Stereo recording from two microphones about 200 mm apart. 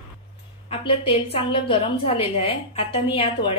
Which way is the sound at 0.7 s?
30° left (ahead or behind).